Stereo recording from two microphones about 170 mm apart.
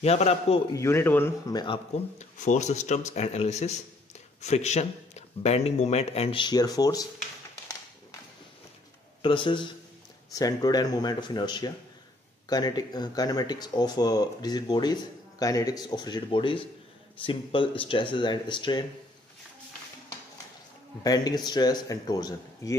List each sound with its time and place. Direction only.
0.0 s speech: 40° left (ahead or behind)
0.7 s speech: 15° left (ahead or behind)
2.1 s speech: 45° left (ahead or behind); by 7.1 s 20° left (ahead or behind)
9.2 s speech: 30° left (ahead or behind)
21.0 s speech: 20° left (ahead or behind)